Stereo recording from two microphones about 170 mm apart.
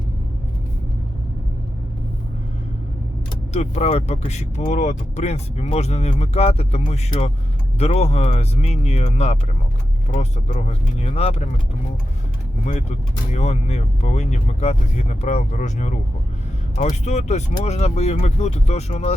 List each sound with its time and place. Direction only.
3.5 s speech: 40° left (ahead or behind)
12.6 s speech: 40° left (ahead or behind)